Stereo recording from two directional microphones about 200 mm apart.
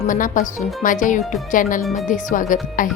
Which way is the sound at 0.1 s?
40° left (ahead or behind).